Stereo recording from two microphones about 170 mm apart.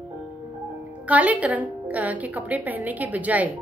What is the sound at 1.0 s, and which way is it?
A woman's voice, 10° right (ahead or behind).